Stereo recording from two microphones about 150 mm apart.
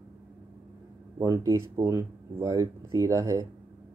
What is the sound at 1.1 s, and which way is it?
Speech, 20° right (ahead or behind).